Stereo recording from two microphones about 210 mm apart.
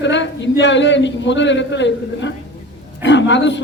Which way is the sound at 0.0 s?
60° left (ahead or behind).